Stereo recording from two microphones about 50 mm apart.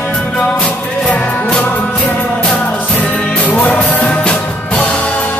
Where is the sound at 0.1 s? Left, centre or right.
Centre.